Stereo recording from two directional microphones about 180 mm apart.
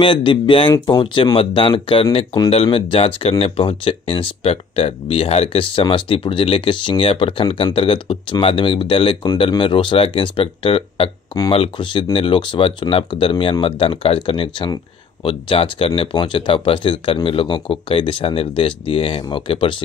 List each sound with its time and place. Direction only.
0.0 s speech: 30° left (ahead or behind)